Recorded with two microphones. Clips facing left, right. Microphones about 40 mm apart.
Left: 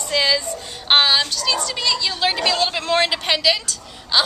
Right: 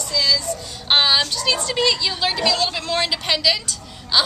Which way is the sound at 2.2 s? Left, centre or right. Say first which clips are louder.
Left 1 dB; centre.